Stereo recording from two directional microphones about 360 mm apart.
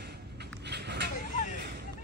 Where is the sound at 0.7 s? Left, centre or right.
Right.